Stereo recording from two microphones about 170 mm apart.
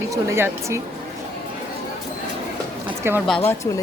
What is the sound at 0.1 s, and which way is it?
Speech, 15° right (ahead or behind).